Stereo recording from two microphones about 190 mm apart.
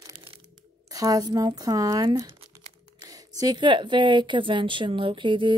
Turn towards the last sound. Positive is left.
turn(degrees=-25)  # may be behind; listen again after turning